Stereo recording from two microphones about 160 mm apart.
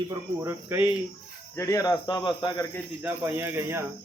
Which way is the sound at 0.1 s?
15° right (ahead or behind).